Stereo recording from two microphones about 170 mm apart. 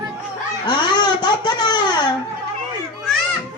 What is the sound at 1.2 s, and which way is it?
Speech, 25° left (ahead or behind).